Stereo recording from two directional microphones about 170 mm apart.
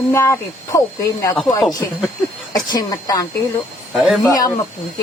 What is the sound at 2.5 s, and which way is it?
Speech, 25° left (ahead or behind).